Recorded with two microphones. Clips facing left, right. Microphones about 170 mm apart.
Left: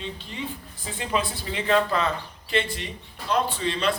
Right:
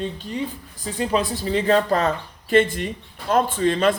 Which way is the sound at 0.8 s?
40° right (ahead or behind).